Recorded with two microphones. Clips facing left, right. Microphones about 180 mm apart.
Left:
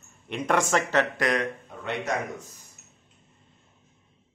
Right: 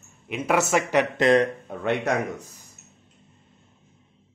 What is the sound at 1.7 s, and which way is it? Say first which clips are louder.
Speech: right 7 dB; 55° right (ahead or behind).